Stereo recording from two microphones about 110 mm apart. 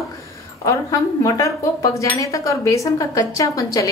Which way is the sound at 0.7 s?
30° left (ahead or behind).